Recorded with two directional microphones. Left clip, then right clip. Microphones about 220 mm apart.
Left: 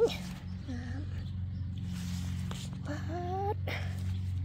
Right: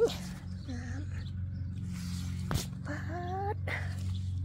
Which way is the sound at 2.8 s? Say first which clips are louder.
Even; 5° left (ahead or behind).